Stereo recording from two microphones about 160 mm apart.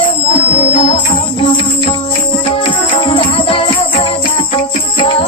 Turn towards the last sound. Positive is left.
turn(degrees=35)  # may be behind; listen again after turning